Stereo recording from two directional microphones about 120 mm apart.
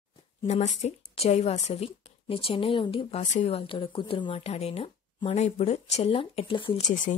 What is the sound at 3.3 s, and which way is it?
Speech, 65° left (ahead or behind).